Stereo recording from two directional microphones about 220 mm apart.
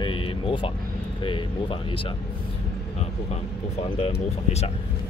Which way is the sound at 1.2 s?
20° left (ahead or behind).